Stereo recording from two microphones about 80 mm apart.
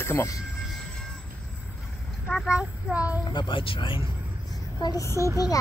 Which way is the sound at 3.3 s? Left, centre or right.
Left.